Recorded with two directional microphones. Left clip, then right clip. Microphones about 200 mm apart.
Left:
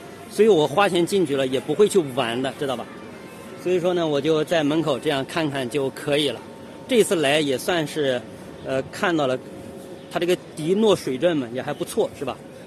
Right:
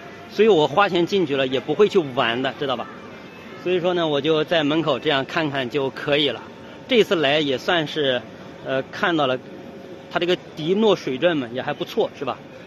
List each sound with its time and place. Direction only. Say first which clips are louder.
0.4 s speech: right 1 dB; centre (ahead or behind)